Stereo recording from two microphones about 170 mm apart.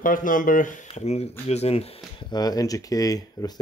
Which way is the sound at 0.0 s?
50° left (ahead or behind).